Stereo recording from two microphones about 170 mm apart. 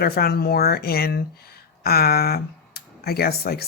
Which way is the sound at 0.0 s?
65° left (ahead or behind).